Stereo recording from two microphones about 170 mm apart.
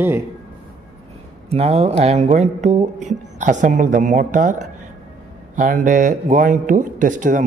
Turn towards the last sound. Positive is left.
turn(degrees=-50)  # may be behind; listen again after turning